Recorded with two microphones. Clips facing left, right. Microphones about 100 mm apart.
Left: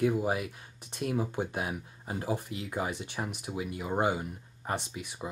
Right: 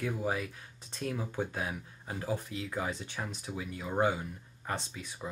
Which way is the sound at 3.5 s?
15° left (ahead or behind).